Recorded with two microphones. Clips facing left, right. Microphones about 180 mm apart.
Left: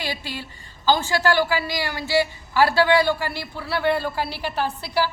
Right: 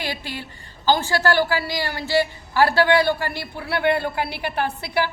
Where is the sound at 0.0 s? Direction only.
50° right (ahead or behind).